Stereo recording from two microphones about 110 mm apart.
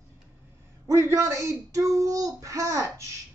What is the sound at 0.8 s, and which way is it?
Speech, 25° right (ahead or behind).